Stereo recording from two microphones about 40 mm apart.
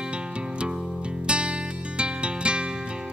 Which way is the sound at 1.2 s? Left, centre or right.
Right.